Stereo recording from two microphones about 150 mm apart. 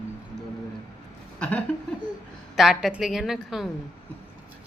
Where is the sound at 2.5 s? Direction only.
Centre (ahead or behind).